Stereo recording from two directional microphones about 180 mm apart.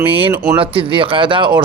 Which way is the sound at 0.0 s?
30° right (ahead or behind).